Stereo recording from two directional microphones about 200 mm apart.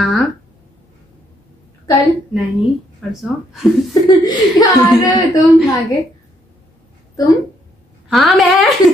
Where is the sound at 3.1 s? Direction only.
Centre (ahead or behind).